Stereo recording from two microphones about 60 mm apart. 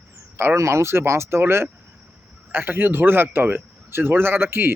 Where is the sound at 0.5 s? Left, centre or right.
Right.